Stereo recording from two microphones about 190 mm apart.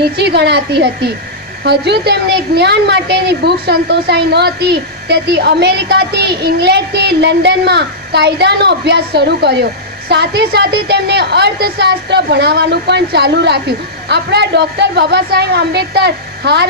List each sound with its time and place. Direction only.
0.0 s a woman's voice: 60° right (ahead or behind)